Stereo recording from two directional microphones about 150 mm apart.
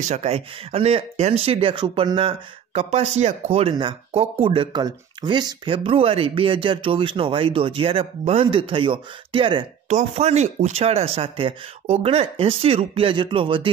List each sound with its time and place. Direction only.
0.0 s speech: 45° right (ahead or behind)
9.8 s speech: 50° right (ahead or behind)